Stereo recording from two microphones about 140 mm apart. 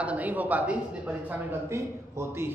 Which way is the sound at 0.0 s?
10° right (ahead or behind).